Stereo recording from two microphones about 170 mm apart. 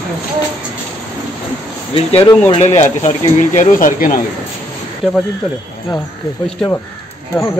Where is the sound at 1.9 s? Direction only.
35° left (ahead or behind).